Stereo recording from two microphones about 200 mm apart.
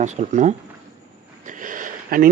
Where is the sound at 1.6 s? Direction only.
40° right (ahead or behind).